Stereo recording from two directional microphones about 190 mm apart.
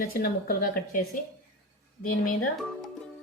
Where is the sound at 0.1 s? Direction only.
50° left (ahead or behind).